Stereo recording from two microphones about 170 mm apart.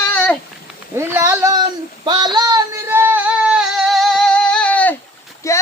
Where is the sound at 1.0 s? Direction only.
15° right (ahead or behind).